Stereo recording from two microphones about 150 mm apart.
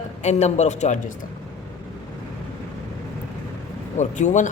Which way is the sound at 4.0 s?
55° left (ahead or behind).